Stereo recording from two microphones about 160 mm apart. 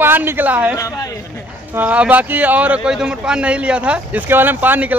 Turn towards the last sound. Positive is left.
turn(degrees=-10)  # may be behind; listen again after turning